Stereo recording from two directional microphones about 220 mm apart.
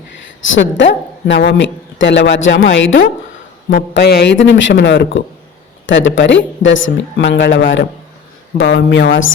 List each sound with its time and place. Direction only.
0.4 s a man's voice: 60° left (ahead or behind)
3.7 s a man's voice: 45° left (ahead or behind)